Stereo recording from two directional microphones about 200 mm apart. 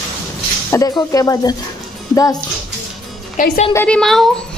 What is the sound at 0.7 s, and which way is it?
Speech, 15° left (ahead or behind).